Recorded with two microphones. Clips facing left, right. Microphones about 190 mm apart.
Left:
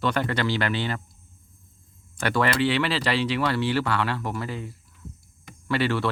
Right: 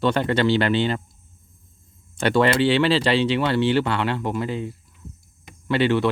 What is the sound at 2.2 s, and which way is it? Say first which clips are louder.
Speech: right 5 dB; 25° right (ahead or behind).